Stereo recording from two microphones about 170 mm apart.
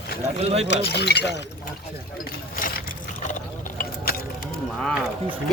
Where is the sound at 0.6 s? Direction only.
80° left.